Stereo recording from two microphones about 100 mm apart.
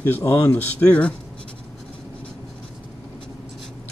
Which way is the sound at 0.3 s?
20° left (ahead or behind).